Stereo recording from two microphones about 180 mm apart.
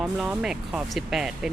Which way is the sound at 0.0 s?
5° right (ahead or behind).